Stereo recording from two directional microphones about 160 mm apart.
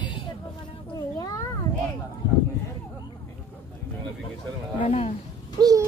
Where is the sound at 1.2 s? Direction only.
25° left (ahead or behind).